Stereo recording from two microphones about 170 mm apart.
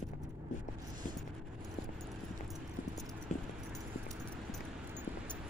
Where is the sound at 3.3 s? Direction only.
45° left (ahead or behind).